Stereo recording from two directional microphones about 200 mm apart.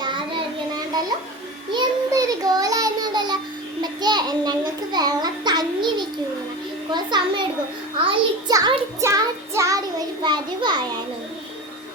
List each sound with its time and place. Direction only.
0.0 s child singing: 25° right (ahead or behind)
1.7 s child singing: 20° right (ahead or behind)
3.8 s a child's voice: 20° right (ahead or behind)
7.9 s child singing: 25° right (ahead or behind)
10.2 s a child's voice: 20° right (ahead or behind)